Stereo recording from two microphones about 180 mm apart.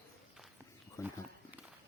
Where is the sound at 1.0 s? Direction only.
15° left (ahead or behind).